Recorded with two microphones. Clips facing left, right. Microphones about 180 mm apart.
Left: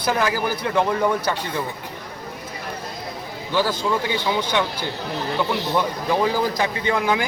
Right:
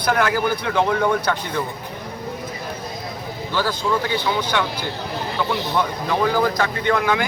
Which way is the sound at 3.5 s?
15° left (ahead or behind).